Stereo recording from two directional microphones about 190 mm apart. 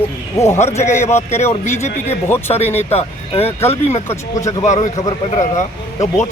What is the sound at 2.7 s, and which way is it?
A man's voice, 30° left (ahead or behind).